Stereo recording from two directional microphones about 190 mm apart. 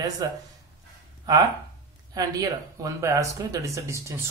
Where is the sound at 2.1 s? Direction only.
20° right (ahead or behind).